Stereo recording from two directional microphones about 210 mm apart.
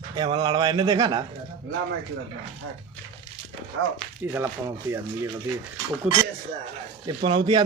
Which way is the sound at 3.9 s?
10° right (ahead or behind).